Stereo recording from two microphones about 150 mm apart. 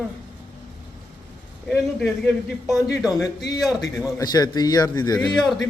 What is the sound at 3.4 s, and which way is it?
Speech, 25° left (ahead or behind).